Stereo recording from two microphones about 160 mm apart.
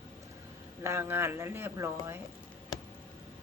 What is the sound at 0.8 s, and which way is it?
A woman's voice, 15° right (ahead or behind).